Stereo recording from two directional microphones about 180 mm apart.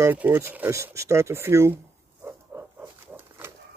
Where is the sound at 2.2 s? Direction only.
10° right (ahead or behind).